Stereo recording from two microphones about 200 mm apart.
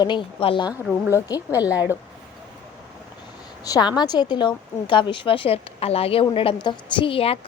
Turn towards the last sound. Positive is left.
turn(degrees=30)  # may be behind; listen again after turning